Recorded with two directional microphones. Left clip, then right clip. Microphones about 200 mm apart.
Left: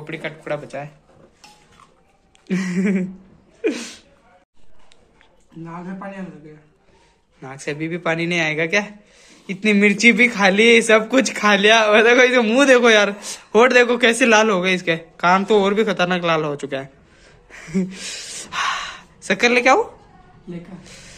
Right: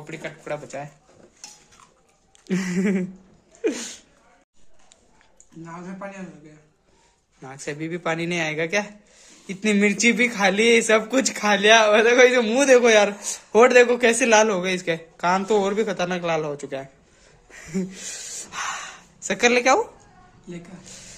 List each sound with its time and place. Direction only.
0.0 s a man's voice: 5° right (ahead or behind)
2.4 s a sound: 20° right (ahead or behind)
3.6 s speech: 15° right (ahead or behind)
5.6 s a man's voice: 10° right (ahead or behind)
7.4 s a man's voice: 10° right (ahead or behind)
17.5 s a sound: 5° right (ahead or behind)